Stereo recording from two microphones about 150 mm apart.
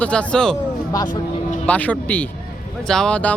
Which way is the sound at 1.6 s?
10° left (ahead or behind).